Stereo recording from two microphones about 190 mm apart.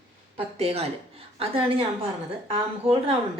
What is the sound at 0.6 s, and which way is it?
A woman's voice, 35° right (ahead or behind).